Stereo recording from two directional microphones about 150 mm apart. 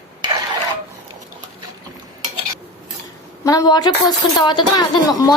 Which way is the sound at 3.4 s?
20° left (ahead or behind).